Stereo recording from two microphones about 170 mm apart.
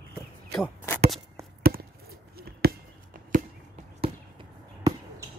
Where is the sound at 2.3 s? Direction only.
65° right (ahead or behind).